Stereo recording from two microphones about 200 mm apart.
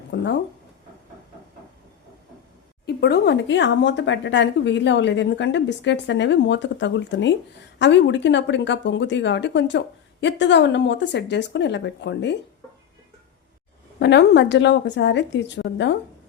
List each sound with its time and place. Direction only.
0.1 s speech: 70° left (ahead or behind)
2.8 s speech: 55° left (ahead or behind)
14.0 s speech: 60° left (ahead or behind)